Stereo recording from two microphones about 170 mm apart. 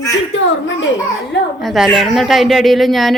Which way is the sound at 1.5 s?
Centre (ahead or behind).